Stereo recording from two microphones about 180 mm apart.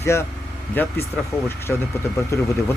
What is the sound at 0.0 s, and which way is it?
Speech, 15° left (ahead or behind).